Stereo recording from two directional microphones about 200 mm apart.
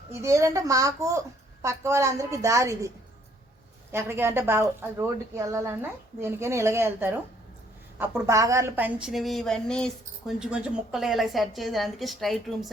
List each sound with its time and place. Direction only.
0.1 s a woman's voice: 15° right (ahead or behind)
3.9 s a woman's voice: 10° right (ahead or behind)